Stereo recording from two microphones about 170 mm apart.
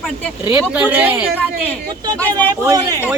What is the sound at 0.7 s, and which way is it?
Speech, 10° right (ahead or behind).